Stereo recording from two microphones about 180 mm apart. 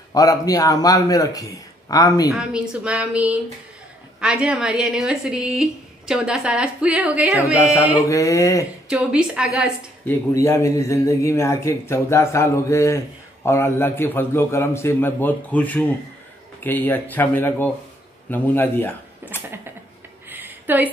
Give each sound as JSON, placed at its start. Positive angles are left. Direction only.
{"t": 0.1, "sound": "a man's voice", "side_deg": 20}
{"t": 2.3, "sound": "a woman's voice", "side_deg": -5}
{"t": 8.1, "sound": "speech", "side_deg": 15}
{"t": 8.8, "sound": "a woman's voice", "side_deg": -5}
{"t": 10.0, "sound": "speech", "side_deg": 15}
{"t": 20.2, "sound": "a sound", "side_deg": -10}